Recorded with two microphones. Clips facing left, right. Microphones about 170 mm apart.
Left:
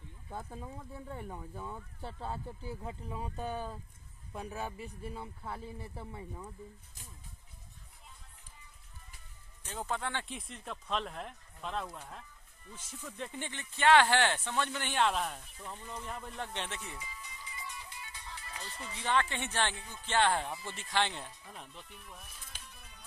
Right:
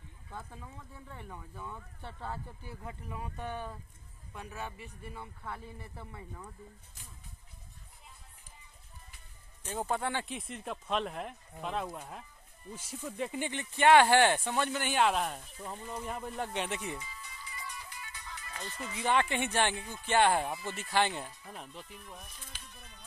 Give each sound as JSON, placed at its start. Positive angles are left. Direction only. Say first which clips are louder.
{"t": 0.3, "sound": "speech", "louder": "left 3 dB", "side_deg": 35}
{"t": 5.1, "sound": "speech", "louder": "left 1 dB", "side_deg": 25}
{"t": 9.7, "sound": "speech", "louder": "right 4 dB", "side_deg": -10}
{"t": 17.2, "sound": "music", "louder": "right 1 dB", "side_deg": 20}
{"t": 18.9, "sound": "speech", "louder": "right 3 dB", "side_deg": -15}
{"t": 22.7, "sound": "music", "louder": "right 2 dB", "side_deg": 10}